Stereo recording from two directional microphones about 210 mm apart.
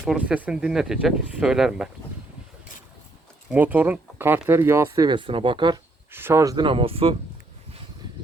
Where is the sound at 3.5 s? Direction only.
10° right (ahead or behind).